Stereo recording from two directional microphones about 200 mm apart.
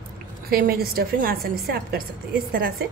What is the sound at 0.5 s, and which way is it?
A woman's voice, 50° right (ahead or behind).